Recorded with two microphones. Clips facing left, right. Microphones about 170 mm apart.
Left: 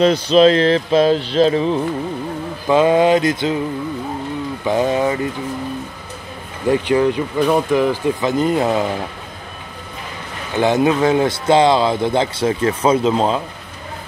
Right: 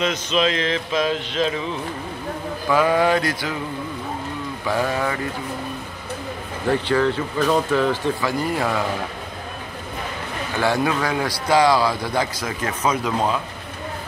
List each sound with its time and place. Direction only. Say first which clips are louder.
0.0 s music: left 10 dB; 35° left (ahead or behind)
2.7 s a man's voice: left 5 dB; 20° left (ahead or behind)
4.6 s a man's voice: left 6 dB; 20° left (ahead or behind)
6.7 s speech: left 4 dB; 15° left (ahead or behind)
10.5 s a man's voice: left 6 dB; 20° left (ahead or behind)